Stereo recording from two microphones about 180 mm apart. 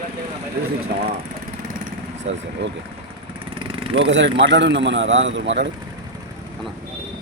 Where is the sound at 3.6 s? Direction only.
30° right (ahead or behind).